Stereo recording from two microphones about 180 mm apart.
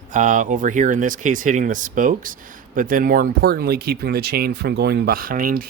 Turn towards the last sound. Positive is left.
turn(degrees=-50)  # may be behind; listen again after turning